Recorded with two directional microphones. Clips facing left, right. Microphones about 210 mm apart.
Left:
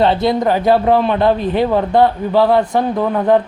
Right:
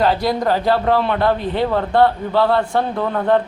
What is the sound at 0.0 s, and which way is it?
Speech, 25° left (ahead or behind).